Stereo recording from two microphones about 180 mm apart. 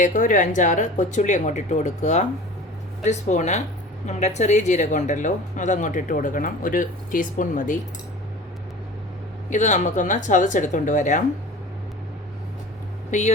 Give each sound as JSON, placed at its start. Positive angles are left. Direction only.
{"t": 0.0, "sound": "a woman's voice", "side_deg": 50}
{"t": 9.5, "sound": "a woman's voice", "side_deg": 40}
{"t": 13.1, "sound": "speech", "side_deg": 40}